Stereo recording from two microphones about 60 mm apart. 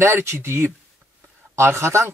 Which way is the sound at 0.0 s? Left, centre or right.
Right.